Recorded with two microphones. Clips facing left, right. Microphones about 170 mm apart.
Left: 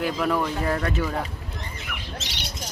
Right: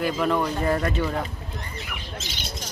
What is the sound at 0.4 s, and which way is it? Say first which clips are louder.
Speech: right 2 dB; 5° right (ahead or behind).